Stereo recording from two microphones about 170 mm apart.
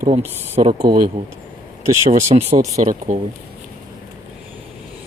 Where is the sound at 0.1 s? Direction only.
40° right (ahead or behind).